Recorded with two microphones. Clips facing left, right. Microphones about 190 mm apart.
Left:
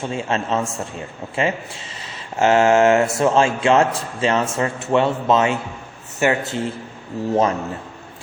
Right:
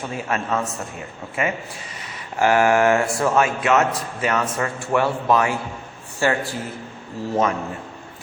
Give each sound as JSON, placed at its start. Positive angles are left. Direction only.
{"t": 0.0, "sound": "a man's voice", "side_deg": 25}